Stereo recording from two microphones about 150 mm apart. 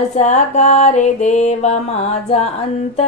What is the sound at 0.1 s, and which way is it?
Mantra, 50° left (ahead or behind).